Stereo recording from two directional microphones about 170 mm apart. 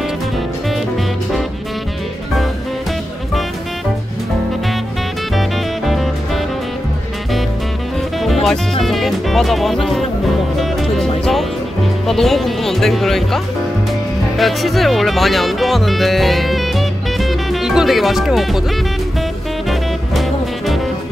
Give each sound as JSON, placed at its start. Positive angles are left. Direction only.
{"t": 5.9, "sound": "music", "side_deg": 0}
{"t": 8.2, "sound": "music", "side_deg": 0}
{"t": 12.1, "sound": "speech", "side_deg": 0}
{"t": 19.7, "sound": "music", "side_deg": 0}